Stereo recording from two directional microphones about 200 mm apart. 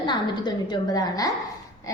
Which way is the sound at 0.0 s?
20° left (ahead or behind).